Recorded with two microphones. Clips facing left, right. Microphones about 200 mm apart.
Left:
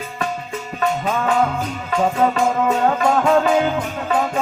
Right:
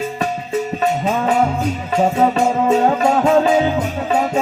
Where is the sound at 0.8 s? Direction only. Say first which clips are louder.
Left 1 dB; 25° right (ahead or behind).